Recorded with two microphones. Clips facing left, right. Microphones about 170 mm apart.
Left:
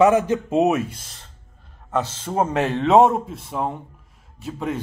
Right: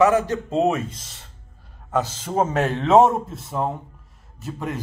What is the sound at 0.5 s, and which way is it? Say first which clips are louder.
Speech: left 2 dB; 5° left (ahead or behind).